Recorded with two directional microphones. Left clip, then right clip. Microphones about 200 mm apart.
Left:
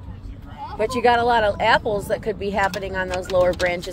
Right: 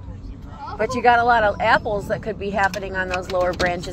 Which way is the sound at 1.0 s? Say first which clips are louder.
Right 2 dB; 20° left (ahead or behind).